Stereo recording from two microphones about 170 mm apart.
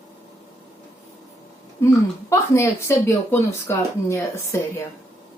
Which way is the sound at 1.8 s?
15° left (ahead or behind).